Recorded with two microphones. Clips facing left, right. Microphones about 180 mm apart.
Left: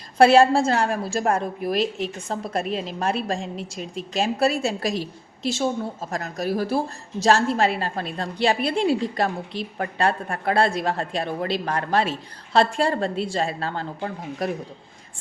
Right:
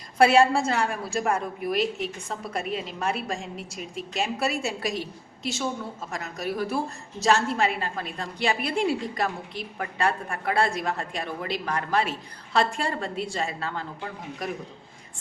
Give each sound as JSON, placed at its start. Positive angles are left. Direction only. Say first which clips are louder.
{"t": 0.2, "sound": "a woman's voice", "louder": "left 4 dB", "side_deg": 30}